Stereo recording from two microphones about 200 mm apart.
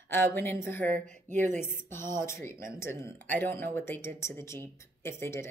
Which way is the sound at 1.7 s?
10° left (ahead or behind).